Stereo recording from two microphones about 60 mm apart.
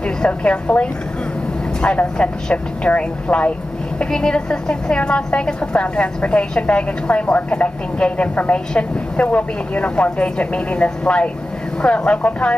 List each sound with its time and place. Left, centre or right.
0.2 s a woman's voice: centre